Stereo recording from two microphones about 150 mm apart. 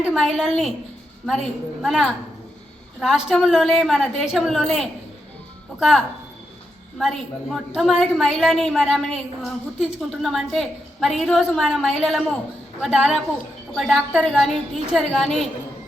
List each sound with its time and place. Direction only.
0.0 s a woman's voice: centre (ahead or behind)
7.0 s a woman's voice: centre (ahead or behind)